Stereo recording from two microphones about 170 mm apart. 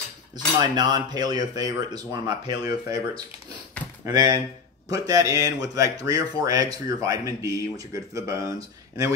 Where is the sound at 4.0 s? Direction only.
20° right (ahead or behind).